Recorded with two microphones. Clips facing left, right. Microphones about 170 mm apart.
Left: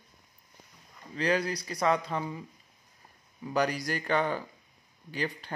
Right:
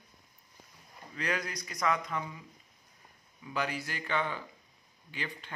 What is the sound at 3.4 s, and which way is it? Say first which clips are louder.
A man's voice: left 6 dB; 40° left (ahead or behind).